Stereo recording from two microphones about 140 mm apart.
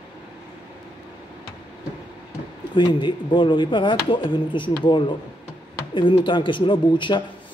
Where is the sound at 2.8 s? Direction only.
35° left (ahead or behind).